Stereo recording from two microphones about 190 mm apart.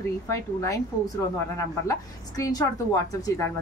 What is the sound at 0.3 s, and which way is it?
A woman's voice, 15° left (ahead or behind).